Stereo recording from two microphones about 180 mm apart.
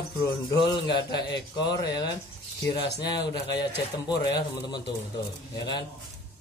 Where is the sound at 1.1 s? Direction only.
20° left (ahead or behind).